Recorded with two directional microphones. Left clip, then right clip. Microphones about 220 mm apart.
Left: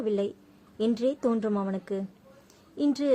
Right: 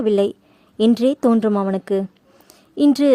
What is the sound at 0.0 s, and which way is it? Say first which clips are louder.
A woman's voice: right 11 dB; 45° right (ahead or behind).